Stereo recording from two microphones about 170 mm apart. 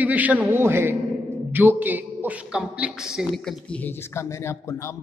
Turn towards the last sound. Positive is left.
turn(degrees=15)  # may be behind; listen again after turning